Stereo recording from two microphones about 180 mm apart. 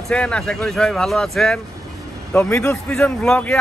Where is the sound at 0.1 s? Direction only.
5° left (ahead or behind).